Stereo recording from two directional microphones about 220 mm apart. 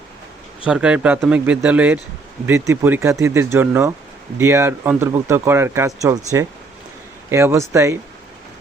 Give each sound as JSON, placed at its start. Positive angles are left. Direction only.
{"t": 0.6, "sound": "speech", "side_deg": -5}